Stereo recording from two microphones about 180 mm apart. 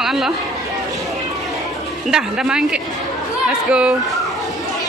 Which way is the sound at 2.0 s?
Centre (ahead or behind).